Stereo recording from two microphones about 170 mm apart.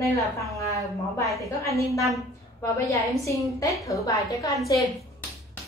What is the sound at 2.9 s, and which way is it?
A woman's voice, 20° left (ahead or behind).